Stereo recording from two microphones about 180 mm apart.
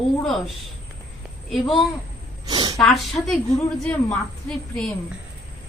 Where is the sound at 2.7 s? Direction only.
Centre (ahead or behind).